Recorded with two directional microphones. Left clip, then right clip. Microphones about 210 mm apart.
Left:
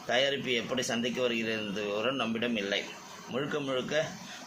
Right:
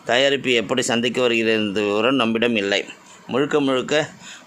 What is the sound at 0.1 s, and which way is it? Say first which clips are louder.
A man's voice: right 11 dB; 55° right (ahead or behind).